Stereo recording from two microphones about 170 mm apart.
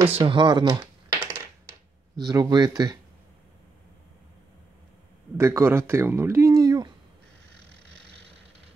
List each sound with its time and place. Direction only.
0.1 s a man's voice: 30° right (ahead or behind)
2.2 s a man's voice: 25° right (ahead or behind)
5.4 s speech: 15° right (ahead or behind)